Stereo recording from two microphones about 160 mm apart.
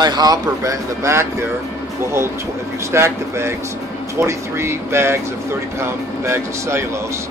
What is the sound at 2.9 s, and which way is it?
Speech, 15° right (ahead or behind).